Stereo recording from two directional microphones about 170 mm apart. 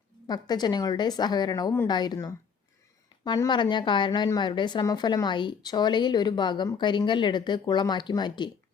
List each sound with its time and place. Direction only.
0.3 s a woman's voice: 25° left (ahead or behind)